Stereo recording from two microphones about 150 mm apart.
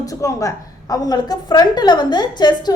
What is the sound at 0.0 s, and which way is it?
A woman's voice, 20° left (ahead or behind).